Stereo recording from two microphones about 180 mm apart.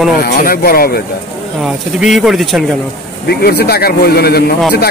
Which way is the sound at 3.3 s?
60° left (ahead or behind).